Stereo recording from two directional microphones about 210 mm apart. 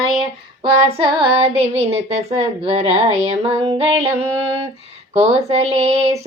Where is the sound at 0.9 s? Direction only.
25° right (ahead or behind).